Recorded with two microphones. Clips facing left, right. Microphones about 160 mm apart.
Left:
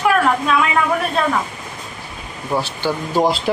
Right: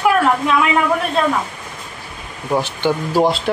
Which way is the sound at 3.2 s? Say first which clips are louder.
Even; centre (ahead or behind).